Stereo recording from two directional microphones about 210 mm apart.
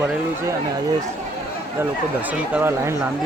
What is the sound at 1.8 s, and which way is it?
Speech, 5° right (ahead or behind).